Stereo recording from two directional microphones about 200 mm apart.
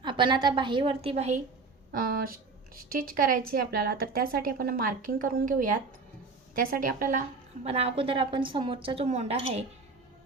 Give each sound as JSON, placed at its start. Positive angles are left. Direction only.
{"t": 0.0, "sound": "a woman's voice", "side_deg": -25}
{"t": 1.9, "sound": "a woman's voice", "side_deg": -45}